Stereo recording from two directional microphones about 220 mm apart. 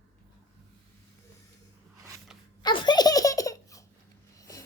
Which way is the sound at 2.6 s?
20° left (ahead or behind).